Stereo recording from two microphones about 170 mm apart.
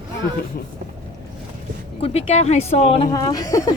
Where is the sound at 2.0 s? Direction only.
35° left (ahead or behind).